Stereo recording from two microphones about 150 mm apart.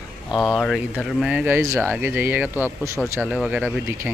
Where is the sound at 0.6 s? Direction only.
5° left (ahead or behind); by 3.0 s 15° right (ahead or behind).